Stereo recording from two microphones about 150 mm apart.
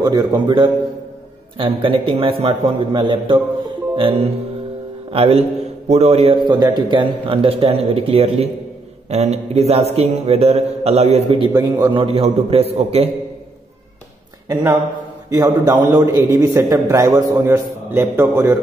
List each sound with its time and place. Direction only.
0.0 s a man's voice: 25° right (ahead or behind)
3.9 s music: 40° right (ahead or behind)
5.1 s a man's voice: 40° right (ahead or behind)
6.4 s a man's voice: 30° right (ahead or behind)
14.5 s a man's voice: 20° right (ahead or behind)